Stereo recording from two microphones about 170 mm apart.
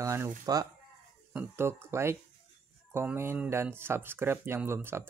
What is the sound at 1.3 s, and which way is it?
Speech, 15° right (ahead or behind).